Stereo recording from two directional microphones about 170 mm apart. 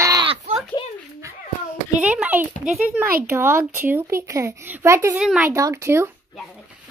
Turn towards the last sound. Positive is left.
turn(degrees=-15)  # may be behind; listen again after turning